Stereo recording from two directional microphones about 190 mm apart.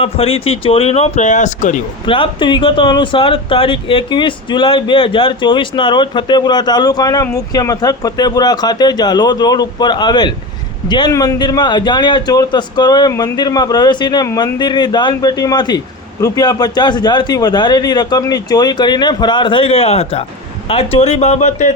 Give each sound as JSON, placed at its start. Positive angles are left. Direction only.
{"t": 0.0, "sound": "speech", "side_deg": 30}
{"t": 2.0, "sound": "speech", "side_deg": 25}